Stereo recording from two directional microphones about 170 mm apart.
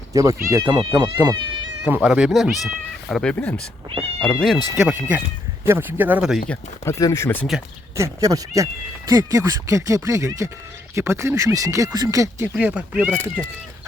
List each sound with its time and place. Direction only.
0.1 s speech: 20° right (ahead or behind)
1.8 s speech: 5° right (ahead or behind)
6.5 s speech: 15° left (ahead or behind)
7.9 s speech: 20° right (ahead or behind)
12.5 s speech: 5° right (ahead or behind)